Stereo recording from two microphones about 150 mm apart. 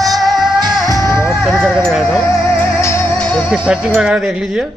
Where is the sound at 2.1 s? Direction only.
20° left (ahead or behind).